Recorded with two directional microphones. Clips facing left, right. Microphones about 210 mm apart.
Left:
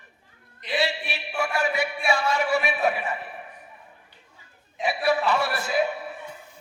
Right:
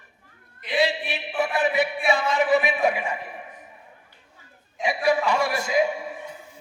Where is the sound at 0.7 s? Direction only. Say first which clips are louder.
Right 3 dB; 15° right (ahead or behind).